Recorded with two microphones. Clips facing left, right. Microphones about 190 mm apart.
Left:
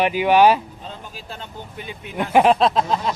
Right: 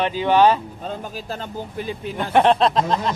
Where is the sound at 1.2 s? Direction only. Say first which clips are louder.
Right 6 dB; 40° right (ahead or behind).